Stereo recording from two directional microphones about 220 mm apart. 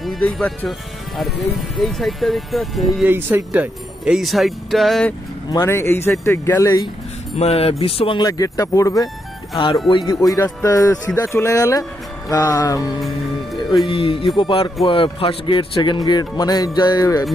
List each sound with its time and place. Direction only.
0.0 s speech: centre (ahead or behind)
5.5 s speech: 10° left (ahead or behind)
7.3 s speech: 25° left (ahead or behind)